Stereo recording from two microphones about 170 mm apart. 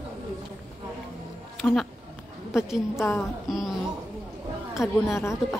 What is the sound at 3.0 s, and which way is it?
Speech, 15° left (ahead or behind).